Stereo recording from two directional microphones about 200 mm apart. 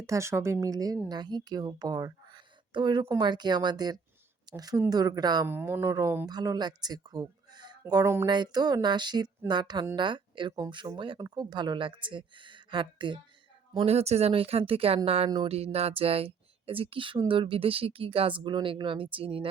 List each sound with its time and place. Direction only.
0.0 s a woman's voice: 15° right (ahead or behind)